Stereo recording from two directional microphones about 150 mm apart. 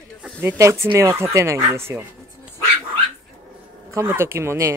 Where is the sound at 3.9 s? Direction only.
20° right (ahead or behind).